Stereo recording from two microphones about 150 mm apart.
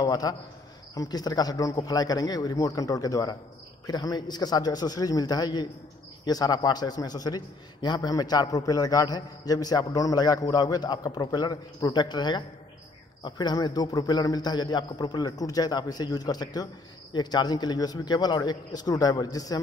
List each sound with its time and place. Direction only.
0.0 s a man's voice: 25° left (ahead or behind)